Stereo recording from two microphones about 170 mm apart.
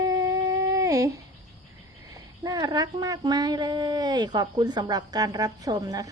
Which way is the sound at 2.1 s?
20° right (ahead or behind).